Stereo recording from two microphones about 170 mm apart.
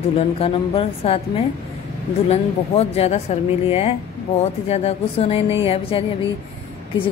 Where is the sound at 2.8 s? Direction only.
40° left (ahead or behind).